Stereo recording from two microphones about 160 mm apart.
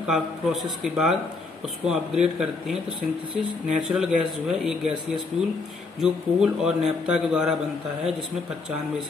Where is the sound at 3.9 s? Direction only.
5° right (ahead or behind).